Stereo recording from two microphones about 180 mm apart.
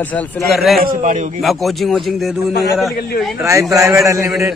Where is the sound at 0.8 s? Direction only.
50° right (ahead or behind).